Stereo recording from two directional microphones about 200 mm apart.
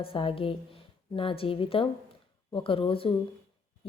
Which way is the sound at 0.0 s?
25° left (ahead or behind).